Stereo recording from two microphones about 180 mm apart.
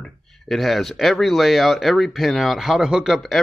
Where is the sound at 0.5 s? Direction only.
Centre (ahead or behind).